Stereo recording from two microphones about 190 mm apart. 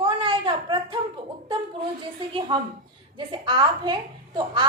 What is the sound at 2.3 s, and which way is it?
A woman's voice, 25° right (ahead or behind).